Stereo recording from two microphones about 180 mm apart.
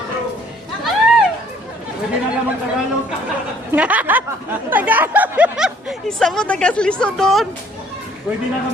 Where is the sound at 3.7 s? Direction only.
10° right (ahead or behind).